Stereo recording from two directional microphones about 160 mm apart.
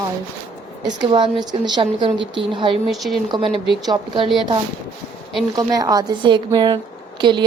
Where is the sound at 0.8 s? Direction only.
25° right (ahead or behind).